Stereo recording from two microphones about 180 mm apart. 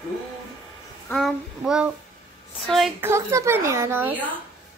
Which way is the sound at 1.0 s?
Centre (ahead or behind).